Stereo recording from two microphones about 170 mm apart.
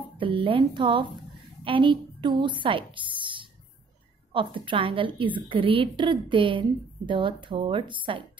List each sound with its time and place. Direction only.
0.2 s a woman's voice: 30° right (ahead or behind)